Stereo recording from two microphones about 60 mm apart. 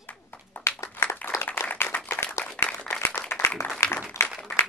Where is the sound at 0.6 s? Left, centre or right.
Left.